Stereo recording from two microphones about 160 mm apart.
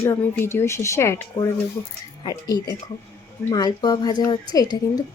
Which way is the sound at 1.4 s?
30° left (ahead or behind).